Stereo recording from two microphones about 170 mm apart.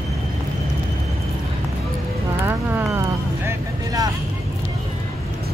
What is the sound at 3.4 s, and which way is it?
Vehicle, 20° right (ahead or behind).